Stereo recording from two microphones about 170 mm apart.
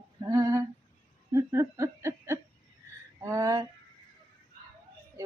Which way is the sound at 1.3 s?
15° right (ahead or behind).